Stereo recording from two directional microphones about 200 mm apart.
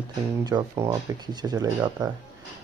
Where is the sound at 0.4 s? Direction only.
15° right (ahead or behind).